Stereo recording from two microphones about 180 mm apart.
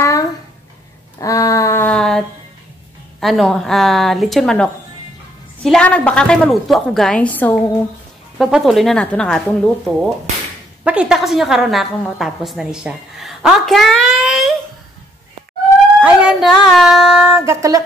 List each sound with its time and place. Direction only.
0.0 s a sound: 20° left (ahead or behind)
3.2 s a woman's voice: centre (ahead or behind)
8.4 s a woman's voice: 5° right (ahead or behind)
16.0 s a woman's voice: 5° right (ahead or behind)
17.5 s music: 20° right (ahead or behind)